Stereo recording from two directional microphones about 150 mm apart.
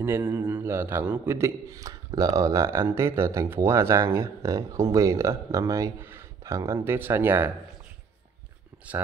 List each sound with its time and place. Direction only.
0.0 s a man's voice: 15° right (ahead or behind)
8.9 s a man's voice: 10° right (ahead or behind)